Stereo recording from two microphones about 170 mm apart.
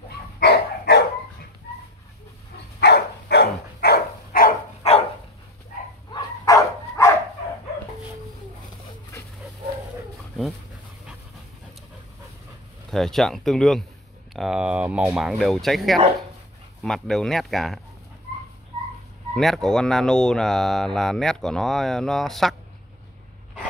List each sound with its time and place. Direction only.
0.4 s dog: 70° left (ahead or behind)
2.8 s a sound: 75° left (ahead or behind); by 4.6 s 55° left (ahead or behind)
4.8 s dog: 40° left (ahead or behind)
6.1 s dog: 20° left (ahead or behind)
12.9 s speech: centre (ahead or behind)
19.3 s speech: centre (ahead or behind)